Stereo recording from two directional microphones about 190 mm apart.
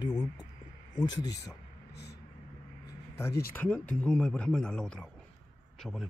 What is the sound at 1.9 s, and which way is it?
Vehicle, 60° left (ahead or behind).